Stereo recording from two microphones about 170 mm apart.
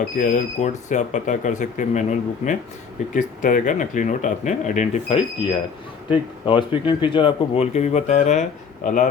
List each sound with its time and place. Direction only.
0.2 s speech: 50° left (ahead or behind)
6.1 s speech: 30° left (ahead or behind); by 9.0 s 45° left (ahead or behind)